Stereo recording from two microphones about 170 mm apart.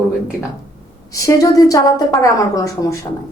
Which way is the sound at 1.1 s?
20° left (ahead or behind).